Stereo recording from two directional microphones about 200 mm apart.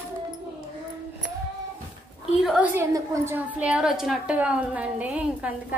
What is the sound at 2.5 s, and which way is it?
A woman's voice, 5° right (ahead or behind).